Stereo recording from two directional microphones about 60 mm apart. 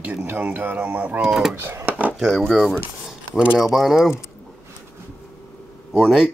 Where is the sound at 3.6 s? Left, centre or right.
Centre.